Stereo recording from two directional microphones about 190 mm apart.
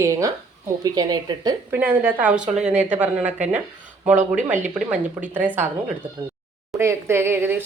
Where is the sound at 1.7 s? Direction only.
10° right (ahead or behind).